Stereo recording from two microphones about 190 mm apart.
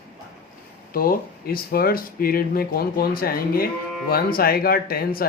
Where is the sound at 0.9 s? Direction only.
50° left (ahead or behind).